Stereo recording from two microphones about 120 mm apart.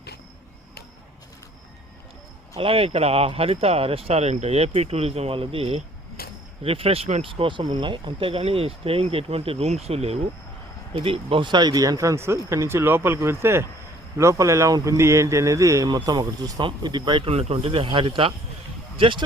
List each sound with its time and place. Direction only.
2.6 s speech: 50° right (ahead or behind)
17.3 s speech: 55° right (ahead or behind)